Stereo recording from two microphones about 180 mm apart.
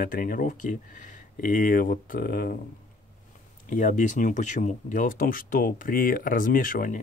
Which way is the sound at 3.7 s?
45° left (ahead or behind).